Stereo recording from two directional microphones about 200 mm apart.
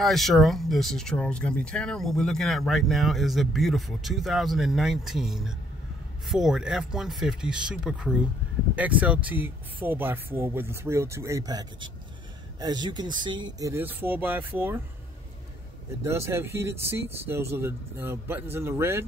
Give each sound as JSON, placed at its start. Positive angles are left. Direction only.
{"t": 0.0, "sound": "speech", "side_deg": 0}
{"t": 16.0, "sound": "speech", "side_deg": -15}